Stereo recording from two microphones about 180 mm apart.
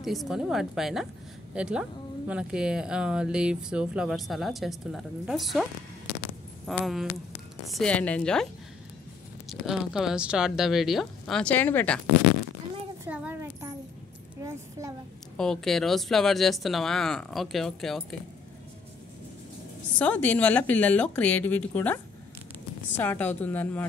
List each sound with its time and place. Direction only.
0.0 s speech: centre (ahead or behind)
9.5 s speech: centre (ahead or behind)
13.0 s a sound: 10° right (ahead or behind)
15.3 s speech: 5° left (ahead or behind)
20.0 s speech: 10° left (ahead or behind)